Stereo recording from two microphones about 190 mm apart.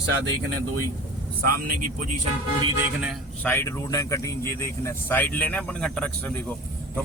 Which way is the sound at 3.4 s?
15° left (ahead or behind).